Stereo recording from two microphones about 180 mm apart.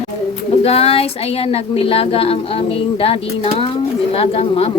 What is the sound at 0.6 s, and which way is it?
Speech, 35° left (ahead or behind).